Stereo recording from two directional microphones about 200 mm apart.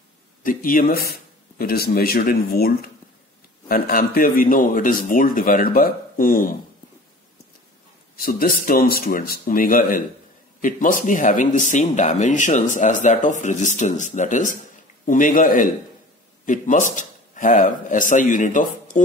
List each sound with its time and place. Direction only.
0.4 s a man's voice: 45° left (ahead or behind)
8.2 s a man's voice: 45° left (ahead or behind)